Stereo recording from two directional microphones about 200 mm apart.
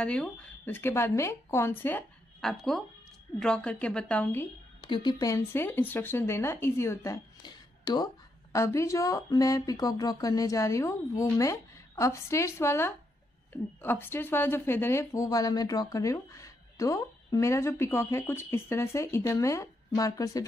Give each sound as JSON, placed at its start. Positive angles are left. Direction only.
{"t": 0.0, "sound": "a woman's voice", "side_deg": 5}
{"t": 4.8, "sound": "speech", "side_deg": 20}